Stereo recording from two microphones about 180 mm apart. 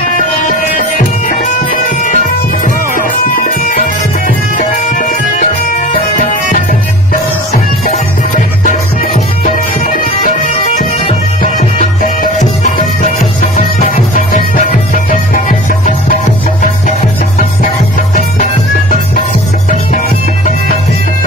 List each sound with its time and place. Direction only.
0.5 s music: 50° left (ahead or behind)
7.5 s music: 45° left (ahead or behind)
10.4 s bagpipes: 50° left (ahead or behind)
12.0 s music: 40° left (ahead or behind)